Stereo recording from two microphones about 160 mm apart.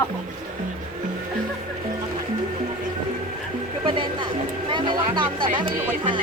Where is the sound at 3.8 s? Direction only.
35° right (ahead or behind).